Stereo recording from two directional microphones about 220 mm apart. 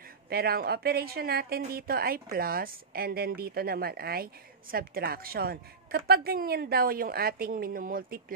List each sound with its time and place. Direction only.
0.3 s speech: 45° right (ahead or behind)